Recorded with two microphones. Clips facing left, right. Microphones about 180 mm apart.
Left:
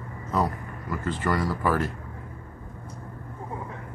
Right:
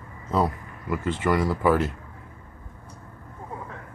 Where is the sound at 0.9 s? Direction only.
20° right (ahead or behind).